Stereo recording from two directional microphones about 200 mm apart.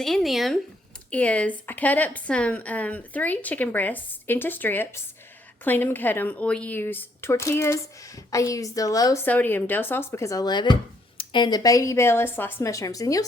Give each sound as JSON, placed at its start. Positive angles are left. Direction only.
{"t": 0.0, "sound": "speech", "side_deg": 0}